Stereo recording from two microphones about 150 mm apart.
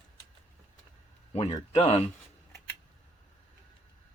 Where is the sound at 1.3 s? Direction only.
40° left (ahead or behind).